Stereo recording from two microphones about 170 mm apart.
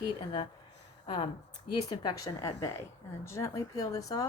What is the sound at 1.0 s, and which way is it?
Speech, 30° left (ahead or behind).